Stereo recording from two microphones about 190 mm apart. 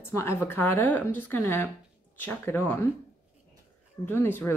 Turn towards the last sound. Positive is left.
turn(degrees=10)  # may be behind; listen again after turning